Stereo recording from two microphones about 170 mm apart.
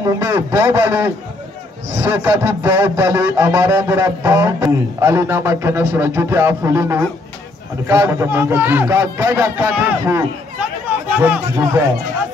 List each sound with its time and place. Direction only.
0.2 s a man's voice: 15° right (ahead or behind)